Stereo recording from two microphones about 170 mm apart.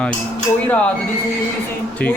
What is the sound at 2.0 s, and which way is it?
Speech, 5° left (ahead or behind).